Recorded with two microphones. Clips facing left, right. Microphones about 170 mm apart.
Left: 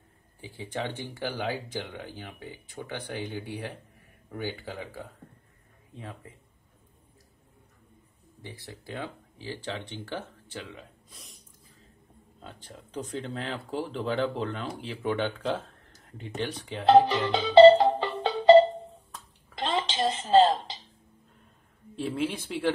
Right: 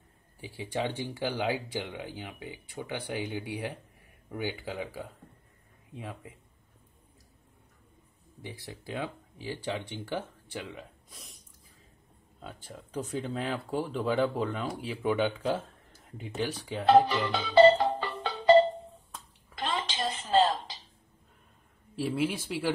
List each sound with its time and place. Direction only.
0.4 s speech: 10° right (ahead or behind)
8.4 s speech: 15° right (ahead or behind)
12.4 s speech: 10° right (ahead or behind)
17.3 s music: 25° left (ahead or behind)
19.5 s a sound: 20° left (ahead or behind)
21.9 s speech: 5° right (ahead or behind)